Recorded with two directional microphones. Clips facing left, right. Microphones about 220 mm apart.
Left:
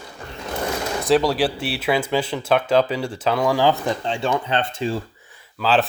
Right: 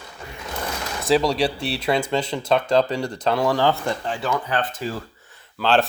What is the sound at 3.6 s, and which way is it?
Speech, 15° left (ahead or behind).